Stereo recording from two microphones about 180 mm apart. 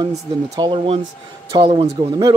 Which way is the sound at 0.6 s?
30° right (ahead or behind).